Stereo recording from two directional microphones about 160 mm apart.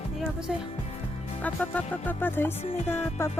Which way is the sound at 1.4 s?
10° left (ahead or behind).